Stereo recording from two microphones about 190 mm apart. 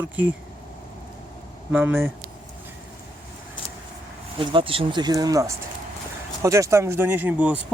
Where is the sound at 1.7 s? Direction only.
10° right (ahead or behind).